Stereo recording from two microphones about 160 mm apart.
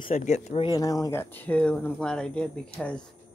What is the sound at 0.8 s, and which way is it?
A woman's voice, 20° left (ahead or behind).